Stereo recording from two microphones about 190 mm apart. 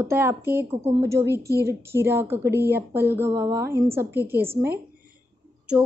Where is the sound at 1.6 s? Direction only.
15° right (ahead or behind).